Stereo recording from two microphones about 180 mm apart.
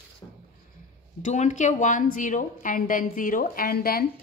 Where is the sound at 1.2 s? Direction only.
40° left (ahead or behind).